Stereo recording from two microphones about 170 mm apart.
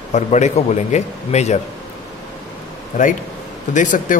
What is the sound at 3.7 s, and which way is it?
Speech, 50° left (ahead or behind).